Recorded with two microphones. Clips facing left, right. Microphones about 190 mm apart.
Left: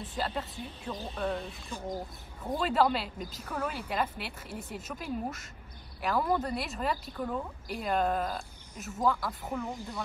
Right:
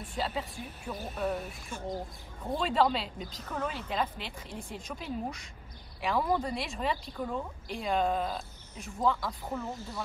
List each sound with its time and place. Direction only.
0.2 s a woman's voice: 5° right (ahead or behind)
2.5 s a woman's voice: 5° left (ahead or behind)
9.5 s speech: 15° left (ahead or behind)